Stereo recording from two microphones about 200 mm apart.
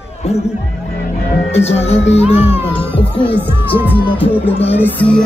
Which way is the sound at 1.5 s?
30° left (ahead or behind).